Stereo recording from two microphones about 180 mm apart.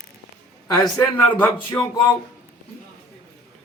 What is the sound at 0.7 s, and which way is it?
Speech, 20° left (ahead or behind).